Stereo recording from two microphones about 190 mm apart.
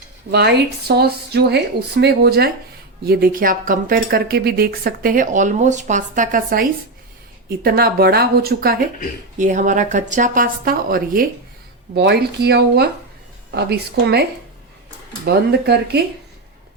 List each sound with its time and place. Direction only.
0.3 s speech: 60° right (ahead or behind)
9.4 s speech: 40° right (ahead or behind)
11.9 s a woman's voice: 60° right (ahead or behind)
15.2 s speech: 60° right (ahead or behind)